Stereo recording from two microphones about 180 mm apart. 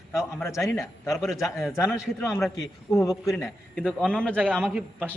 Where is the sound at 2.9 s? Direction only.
20° left (ahead or behind).